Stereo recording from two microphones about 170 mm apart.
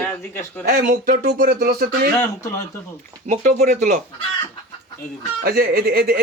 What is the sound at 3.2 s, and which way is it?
Music, 45° right (ahead or behind).